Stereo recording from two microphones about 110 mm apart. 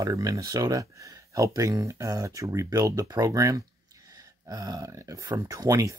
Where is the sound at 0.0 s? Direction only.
35° right (ahead or behind).